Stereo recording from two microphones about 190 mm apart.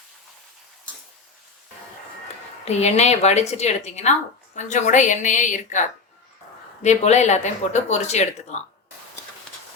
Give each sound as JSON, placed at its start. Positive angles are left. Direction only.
{"t": 2.6, "sound": "speech", "side_deg": 35}
{"t": 6.8, "sound": "speech", "side_deg": 35}